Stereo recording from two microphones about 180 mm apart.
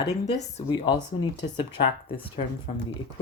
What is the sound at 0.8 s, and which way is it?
Speech, 25° left (ahead or behind).